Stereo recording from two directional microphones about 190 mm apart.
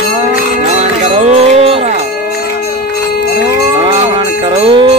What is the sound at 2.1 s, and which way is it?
Music, 55° left (ahead or behind).